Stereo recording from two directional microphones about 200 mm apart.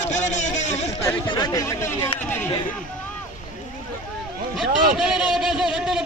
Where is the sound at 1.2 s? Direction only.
20° left (ahead or behind).